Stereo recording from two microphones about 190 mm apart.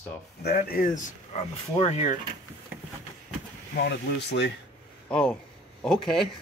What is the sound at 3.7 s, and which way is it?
Speech, 60° left (ahead or behind).